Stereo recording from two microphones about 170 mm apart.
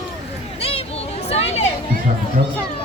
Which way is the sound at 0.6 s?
35° left (ahead or behind).